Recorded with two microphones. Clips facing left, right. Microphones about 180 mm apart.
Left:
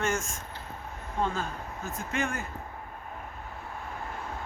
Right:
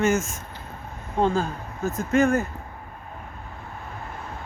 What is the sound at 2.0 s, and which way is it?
Speech, 40° right (ahead or behind).